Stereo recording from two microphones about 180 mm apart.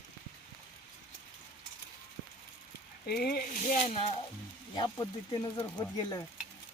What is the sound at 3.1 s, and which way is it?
Speech, 60° left (ahead or behind).